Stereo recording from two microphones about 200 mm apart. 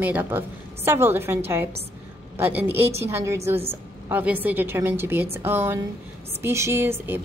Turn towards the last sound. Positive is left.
turn(degrees=-10)  # may be behind; listen again after turning